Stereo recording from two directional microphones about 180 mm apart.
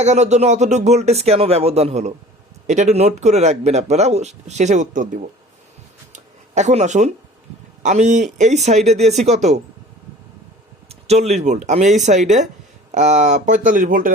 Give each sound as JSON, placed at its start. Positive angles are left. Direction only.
{"t": 0.0, "sound": "a man's voice", "side_deg": -40}
{"t": 6.1, "sound": "a sound", "side_deg": -40}
{"t": 7.8, "sound": "a man's voice", "side_deg": -40}
{"t": 10.8, "sound": "a man's voice", "side_deg": -35}